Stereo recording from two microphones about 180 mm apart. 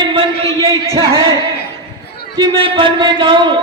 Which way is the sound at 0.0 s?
25° right (ahead or behind).